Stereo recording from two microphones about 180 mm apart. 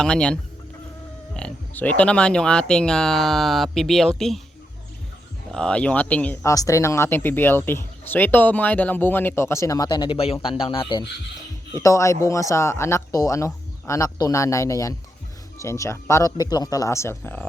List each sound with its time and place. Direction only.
0.0 s speech: 5° left (ahead or behind)
5.5 s speech: 5° left (ahead or behind)